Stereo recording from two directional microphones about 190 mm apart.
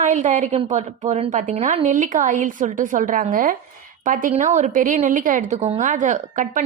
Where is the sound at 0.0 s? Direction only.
40° right (ahead or behind).